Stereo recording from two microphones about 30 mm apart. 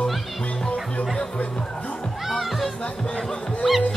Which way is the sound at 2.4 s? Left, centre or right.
Centre.